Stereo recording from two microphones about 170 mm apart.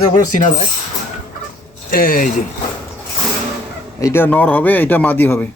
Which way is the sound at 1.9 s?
55° left (ahead or behind).